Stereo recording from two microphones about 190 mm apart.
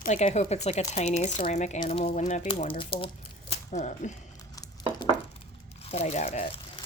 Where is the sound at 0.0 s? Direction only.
40° left (ahead or behind).